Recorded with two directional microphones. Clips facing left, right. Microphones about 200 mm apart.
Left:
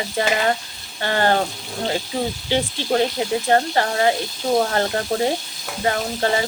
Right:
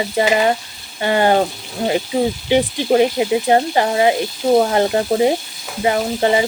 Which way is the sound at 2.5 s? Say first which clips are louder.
Right 6 dB; 15° right (ahead or behind).